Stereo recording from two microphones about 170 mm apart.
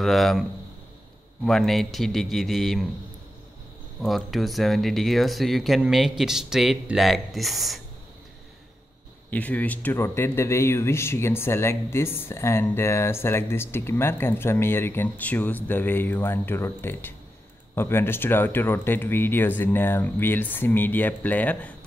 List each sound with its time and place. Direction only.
0.0 s speech: centre (ahead or behind)
4.0 s speech: centre (ahead or behind)
9.3 s speech: 10° left (ahead or behind)